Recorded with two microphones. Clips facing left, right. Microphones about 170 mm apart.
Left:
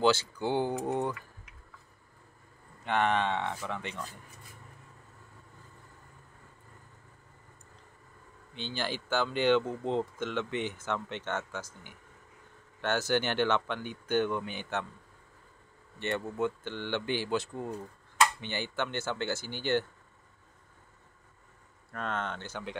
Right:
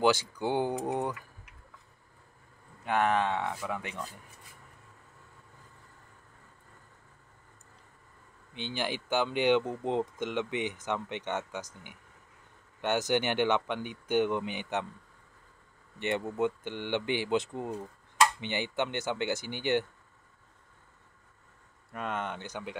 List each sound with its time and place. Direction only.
0.0 s speech: 15° right (ahead or behind)
2.8 s speech: 5° right (ahead or behind)
8.5 s speech: 15° right (ahead or behind)
16.0 s speech: 20° right (ahead or behind)
21.9 s speech: 10° right (ahead or behind)